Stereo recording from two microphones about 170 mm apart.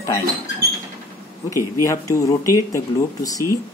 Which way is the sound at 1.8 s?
20° left (ahead or behind).